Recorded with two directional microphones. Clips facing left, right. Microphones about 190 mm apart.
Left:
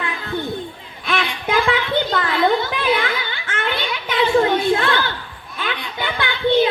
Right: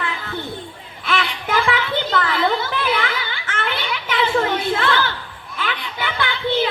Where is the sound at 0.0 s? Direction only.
15° left (ahead or behind).